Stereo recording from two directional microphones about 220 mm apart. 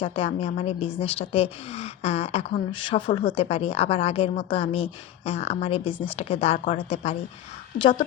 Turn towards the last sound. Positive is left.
turn(degrees=40)  # may be behind; listen again after turning